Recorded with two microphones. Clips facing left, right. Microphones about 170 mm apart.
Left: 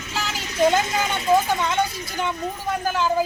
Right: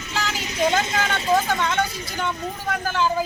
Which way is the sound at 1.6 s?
10° left (ahead or behind).